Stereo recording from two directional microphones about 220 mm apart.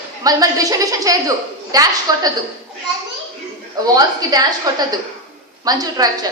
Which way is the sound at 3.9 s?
15° right (ahead or behind).